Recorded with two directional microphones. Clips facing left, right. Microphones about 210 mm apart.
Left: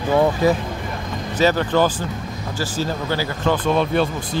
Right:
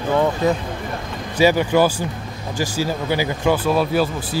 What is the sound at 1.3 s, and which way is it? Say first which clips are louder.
Speech: right 2 dB; 10° right (ahead or behind).